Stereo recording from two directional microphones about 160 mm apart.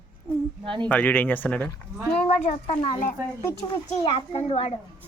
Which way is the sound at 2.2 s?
45° left (ahead or behind).